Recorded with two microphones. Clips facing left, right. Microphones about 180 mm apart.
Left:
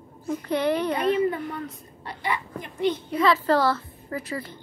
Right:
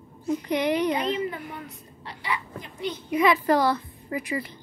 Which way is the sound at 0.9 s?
55° left (ahead or behind).